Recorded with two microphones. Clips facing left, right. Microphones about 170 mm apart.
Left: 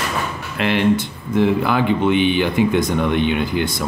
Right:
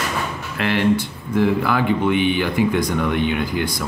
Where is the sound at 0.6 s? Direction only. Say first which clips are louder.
Left 1 dB; 20° left (ahead or behind).